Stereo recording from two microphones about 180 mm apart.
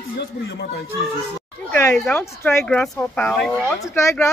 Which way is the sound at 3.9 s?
15° left (ahead or behind).